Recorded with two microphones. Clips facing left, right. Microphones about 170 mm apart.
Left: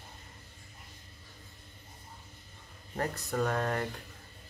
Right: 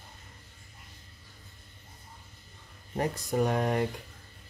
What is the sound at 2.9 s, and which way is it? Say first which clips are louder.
Speech: right 4 dB; 15° right (ahead or behind).